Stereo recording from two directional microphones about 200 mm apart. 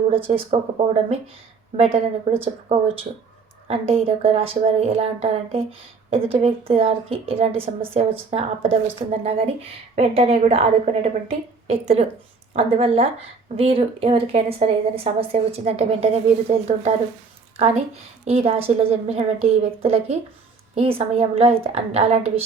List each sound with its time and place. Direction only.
0.1 s a woman's voice: 30° right (ahead or behind)
1.7 s a woman's voice: 30° right (ahead or behind)
18.3 s a woman's voice: 30° right (ahead or behind)